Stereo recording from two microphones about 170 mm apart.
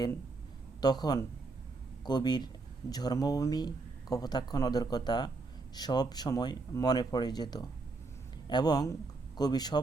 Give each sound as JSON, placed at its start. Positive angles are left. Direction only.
{"t": 0.8, "sound": "speech", "side_deg": 25}